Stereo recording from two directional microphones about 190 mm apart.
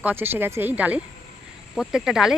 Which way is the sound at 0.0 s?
10° right (ahead or behind).